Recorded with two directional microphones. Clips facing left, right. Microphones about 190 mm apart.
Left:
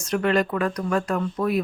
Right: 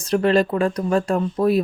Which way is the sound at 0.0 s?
30° right (ahead or behind).